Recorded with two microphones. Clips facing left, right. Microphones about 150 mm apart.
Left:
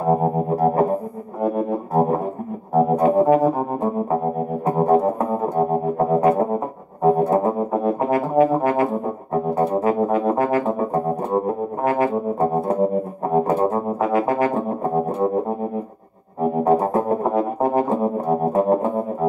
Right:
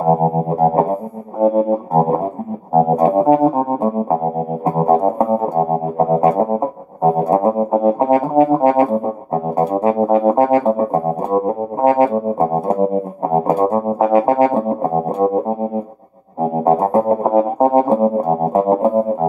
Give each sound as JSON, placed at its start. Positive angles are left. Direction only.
{"t": 0.1, "sound": "music", "side_deg": -35}
{"t": 16.3, "sound": "music", "side_deg": -35}